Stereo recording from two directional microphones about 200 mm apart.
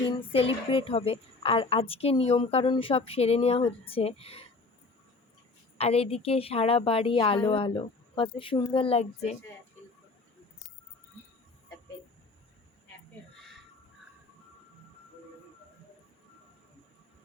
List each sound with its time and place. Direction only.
0.1 s a woman's voice: 25° left (ahead or behind)
5.7 s a woman's voice: 30° left (ahead or behind)
13.3 s a sound: centre (ahead or behind)